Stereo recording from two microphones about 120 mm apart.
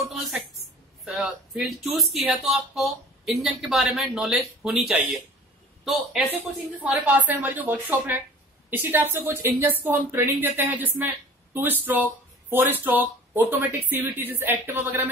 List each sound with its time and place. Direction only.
0.0 s a sound: centre (ahead or behind)
1.0 s speech: 5° right (ahead or behind)
6.7 s speech: 15° right (ahead or behind)